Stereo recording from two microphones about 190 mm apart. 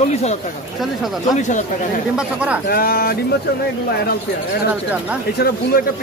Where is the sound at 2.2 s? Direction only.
5° right (ahead or behind).